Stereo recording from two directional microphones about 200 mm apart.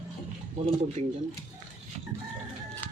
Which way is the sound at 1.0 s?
35° right (ahead or behind).